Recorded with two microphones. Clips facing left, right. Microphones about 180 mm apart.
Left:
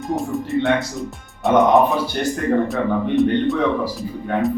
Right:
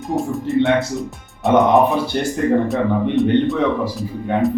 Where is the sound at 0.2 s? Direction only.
Centre (ahead or behind).